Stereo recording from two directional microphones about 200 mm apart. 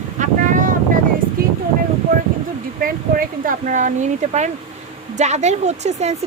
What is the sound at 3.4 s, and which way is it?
Speech, 40° right (ahead or behind).